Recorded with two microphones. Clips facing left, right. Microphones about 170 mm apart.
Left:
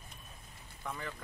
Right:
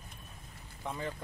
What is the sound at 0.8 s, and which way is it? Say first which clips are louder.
Speech: right 4 dB; 25° right (ahead or behind).